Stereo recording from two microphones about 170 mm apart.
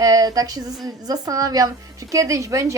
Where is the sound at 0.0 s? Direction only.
20° right (ahead or behind).